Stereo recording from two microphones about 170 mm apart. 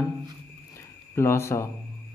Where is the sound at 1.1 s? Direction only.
15° left (ahead or behind).